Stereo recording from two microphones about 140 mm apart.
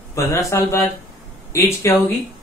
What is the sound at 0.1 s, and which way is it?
Speech, 20° left (ahead or behind).